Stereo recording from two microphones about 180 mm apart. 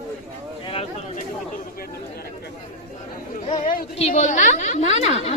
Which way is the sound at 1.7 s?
55° left (ahead or behind).